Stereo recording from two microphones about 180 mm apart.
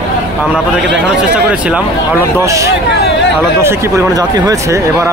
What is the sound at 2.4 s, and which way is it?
Speech, 15° right (ahead or behind).